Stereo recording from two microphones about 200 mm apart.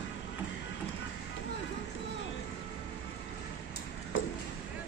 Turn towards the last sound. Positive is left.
turn(degrees=75)  # may be behind; listen again after turning